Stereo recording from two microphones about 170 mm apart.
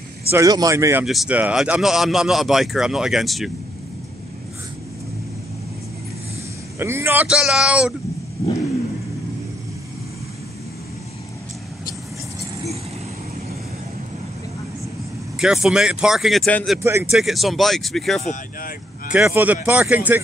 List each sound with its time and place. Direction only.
0.3 s speech: 20° right (ahead or behind)
1.0 s a man's voice: centre (ahead or behind)
6.8 s speech: 15° right (ahead or behind)
15.3 s a man's voice: 5° right (ahead or behind)
18.2 s speech: 50° left (ahead or behind)
19.1 s speech: 10° right (ahead or behind)